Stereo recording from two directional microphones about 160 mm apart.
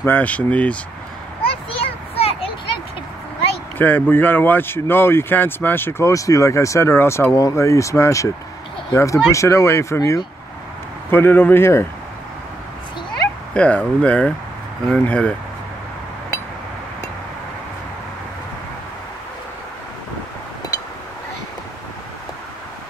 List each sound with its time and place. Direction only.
0.0 s speech: 10° left (ahead or behind)
1.7 s a sound: 35° left (ahead or behind)
3.7 s speech: 10° left (ahead or behind)
13.5 s speech: 5° left (ahead or behind)